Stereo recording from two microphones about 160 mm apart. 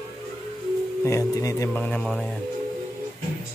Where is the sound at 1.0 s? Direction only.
20° left (ahead or behind).